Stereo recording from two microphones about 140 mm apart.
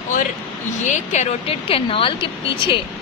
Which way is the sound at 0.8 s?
55° left (ahead or behind).